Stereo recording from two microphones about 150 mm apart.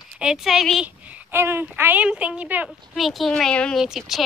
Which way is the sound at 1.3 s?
15° right (ahead or behind).